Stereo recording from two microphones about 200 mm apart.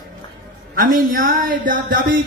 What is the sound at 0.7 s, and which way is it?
A man's voice, 40° right (ahead or behind).